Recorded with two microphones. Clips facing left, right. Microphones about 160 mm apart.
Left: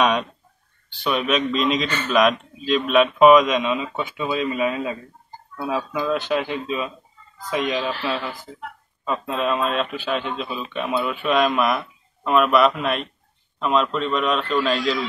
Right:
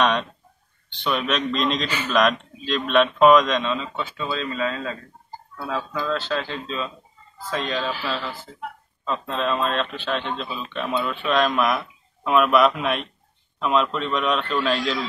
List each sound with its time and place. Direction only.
0.0 s bird: 5° left (ahead or behind)
1.0 s a man's voice: 5° left (ahead or behind)
7.9 s a man's voice: centre (ahead or behind)
8.2 s a man's voice: 15° left (ahead or behind)